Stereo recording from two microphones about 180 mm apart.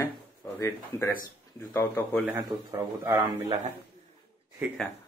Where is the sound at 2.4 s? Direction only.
20° right (ahead or behind).